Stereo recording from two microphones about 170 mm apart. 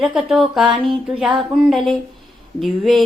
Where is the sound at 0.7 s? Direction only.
30° right (ahead or behind).